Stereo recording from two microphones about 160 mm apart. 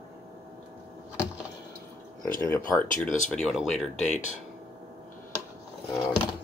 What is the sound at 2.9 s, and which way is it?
Speech, 50° left (ahead or behind).